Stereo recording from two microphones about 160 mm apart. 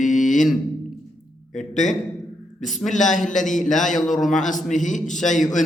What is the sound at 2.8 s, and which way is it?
Speech, 50° left (ahead or behind).